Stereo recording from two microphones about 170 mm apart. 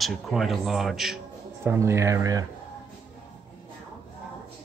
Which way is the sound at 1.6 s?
15° right (ahead or behind).